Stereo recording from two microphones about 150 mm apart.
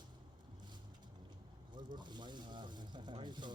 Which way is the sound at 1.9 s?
30° right (ahead or behind).